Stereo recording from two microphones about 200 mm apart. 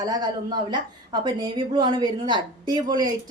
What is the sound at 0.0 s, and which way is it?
A woman's voice, 20° right (ahead or behind).